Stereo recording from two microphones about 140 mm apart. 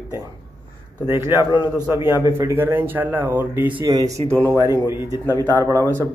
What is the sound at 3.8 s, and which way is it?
Speech, 25° right (ahead or behind).